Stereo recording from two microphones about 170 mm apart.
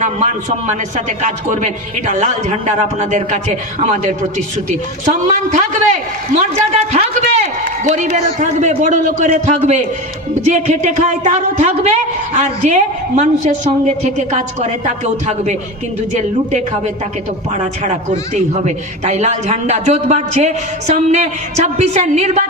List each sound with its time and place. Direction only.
0.7 s a woman's voice: 45° right (ahead or behind)
5.0 s a woman's voice: 45° right (ahead or behind)